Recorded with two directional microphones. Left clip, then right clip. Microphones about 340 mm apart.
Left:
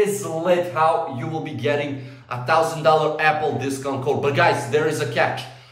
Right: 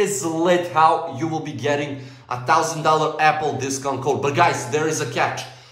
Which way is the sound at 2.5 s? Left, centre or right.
Centre.